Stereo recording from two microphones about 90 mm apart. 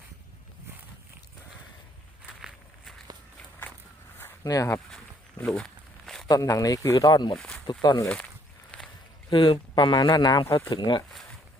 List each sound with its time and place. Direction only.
4.4 s speech: 40° left (ahead or behind)
5.4 s speech: 15° left (ahead or behind)
5.6 s a sound: 5° left (ahead or behind)
6.2 s speech: 40° left (ahead or behind)
6.9 s speech: 55° left (ahead or behind)
7.3 s speech: 5° left (ahead or behind)
7.7 s speech: 45° left (ahead or behind)
8.7 s a sound: 15° left (ahead or behind)
9.3 s speech: 65° left (ahead or behind)
10.1 s speech: 50° left (ahead or behind)